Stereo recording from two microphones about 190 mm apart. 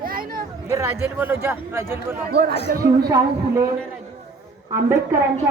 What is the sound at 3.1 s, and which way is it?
Speech, 15° right (ahead or behind).